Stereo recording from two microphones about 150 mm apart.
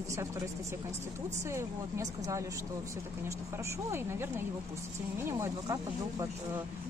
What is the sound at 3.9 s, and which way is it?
Speech, 15° right (ahead or behind).